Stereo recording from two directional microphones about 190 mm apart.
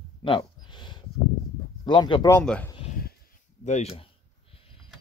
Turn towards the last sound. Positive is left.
turn(degrees=35)  # may be behind; listen again after turning